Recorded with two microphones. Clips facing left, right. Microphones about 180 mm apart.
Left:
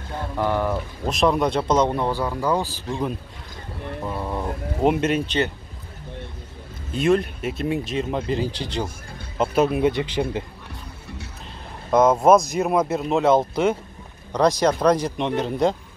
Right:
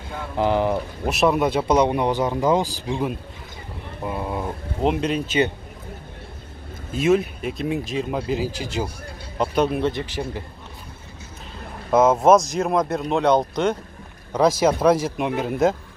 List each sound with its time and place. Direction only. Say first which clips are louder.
0.4 s speech: right 3 dB; 20° right (ahead or behind)
1.0 s speech: even; 10° right (ahead or behind)
4.8 s speech: left 2 dB; 5° left (ahead or behind)
6.9 s speech: right 1 dB; 5° right (ahead or behind)
9.4 s speech: left 2 dB; 5° left (ahead or behind); by 10.4 s 20° left (ahead or behind)
11.9 s speech: even; 5° right (ahead or behind)